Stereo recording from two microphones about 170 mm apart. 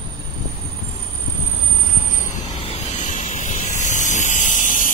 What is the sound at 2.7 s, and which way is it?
Vehicle, 45° left (ahead or behind).